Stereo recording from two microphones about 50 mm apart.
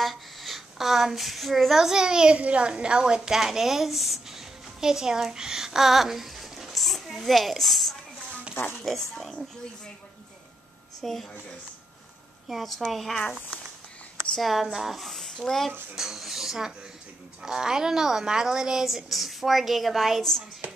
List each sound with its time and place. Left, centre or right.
0.0 s a woman's voice: centre
2.3 s a woman's voice: right
3.2 s a woman's voice: centre
9.1 s speech: centre
11.0 s a woman's voice: centre
12.4 s speech: centre
14.4 s speech: centre
15.0 s a sound: centre
15.4 s speech: centre
16.0 s a sound: centre
17.4 s a woman's voice: centre
20.2 s speech: centre